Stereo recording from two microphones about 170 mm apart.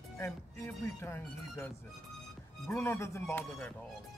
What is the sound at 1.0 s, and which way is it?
Speech, 15° left (ahead or behind).